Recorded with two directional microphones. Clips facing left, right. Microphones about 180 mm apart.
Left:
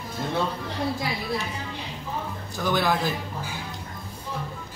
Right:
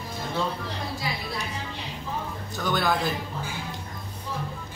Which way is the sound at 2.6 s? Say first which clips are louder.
Left 2 dB; 5° left (ahead or behind).